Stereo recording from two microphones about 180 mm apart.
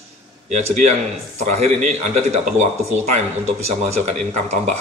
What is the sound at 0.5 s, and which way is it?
Speech, 40° right (ahead or behind).